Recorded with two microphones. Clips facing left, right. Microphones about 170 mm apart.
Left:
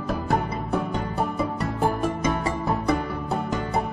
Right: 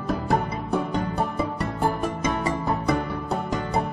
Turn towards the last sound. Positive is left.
turn(degrees=0)  # may be behind; listen again after turning